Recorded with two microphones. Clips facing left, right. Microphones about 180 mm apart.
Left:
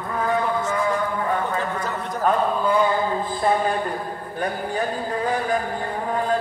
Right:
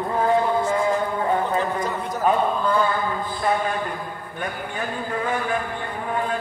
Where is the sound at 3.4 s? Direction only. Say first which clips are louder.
Left 2 dB; 35° left (ahead or behind).